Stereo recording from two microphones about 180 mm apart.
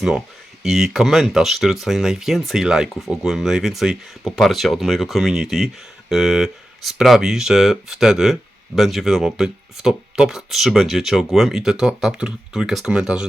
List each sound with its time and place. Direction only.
0.6 s speech: centre (ahead or behind)